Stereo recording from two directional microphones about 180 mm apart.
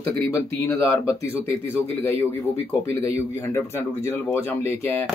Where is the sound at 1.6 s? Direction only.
10° left (ahead or behind).